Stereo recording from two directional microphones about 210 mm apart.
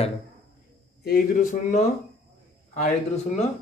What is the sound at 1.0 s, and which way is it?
Speech, 40° left (ahead or behind).